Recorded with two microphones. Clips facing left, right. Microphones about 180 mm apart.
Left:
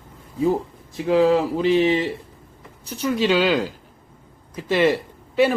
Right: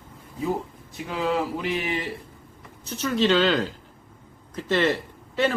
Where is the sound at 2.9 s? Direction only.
10° left (ahead or behind).